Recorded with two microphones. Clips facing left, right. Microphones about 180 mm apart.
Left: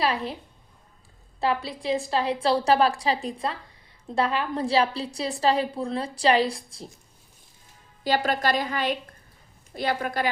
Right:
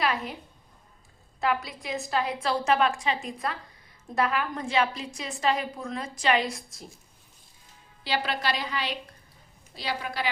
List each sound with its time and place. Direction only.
0.0 s a woman's voice: 30° left (ahead or behind)
1.4 s a woman's voice: 30° left (ahead or behind)
8.0 s a woman's voice: 45° left (ahead or behind)